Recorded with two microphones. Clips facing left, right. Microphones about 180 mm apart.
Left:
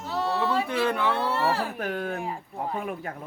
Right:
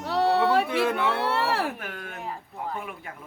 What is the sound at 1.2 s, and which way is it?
Speech, 70° right (ahead or behind).